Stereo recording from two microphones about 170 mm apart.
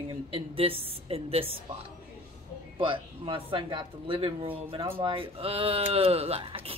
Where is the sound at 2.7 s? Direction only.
30° right (ahead or behind).